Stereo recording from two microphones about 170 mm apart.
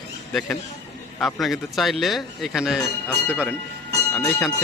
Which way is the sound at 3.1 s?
10° left (ahead or behind).